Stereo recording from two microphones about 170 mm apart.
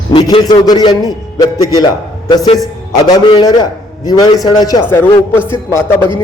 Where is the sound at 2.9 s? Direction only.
25° left (ahead or behind).